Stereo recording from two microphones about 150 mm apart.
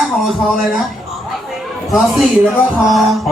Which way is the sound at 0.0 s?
Centre (ahead or behind).